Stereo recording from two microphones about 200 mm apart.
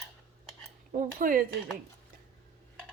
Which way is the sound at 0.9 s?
40° right (ahead or behind).